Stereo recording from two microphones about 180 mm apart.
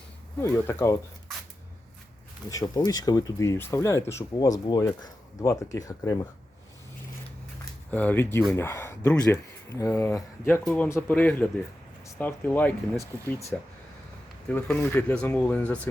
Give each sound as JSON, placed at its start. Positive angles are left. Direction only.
{"t": 0.4, "sound": "speech", "side_deg": 15}
{"t": 2.5, "sound": "speech", "side_deg": 20}
{"t": 7.6, "sound": "speech", "side_deg": 10}